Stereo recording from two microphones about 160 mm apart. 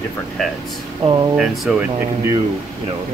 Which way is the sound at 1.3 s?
Centre (ahead or behind).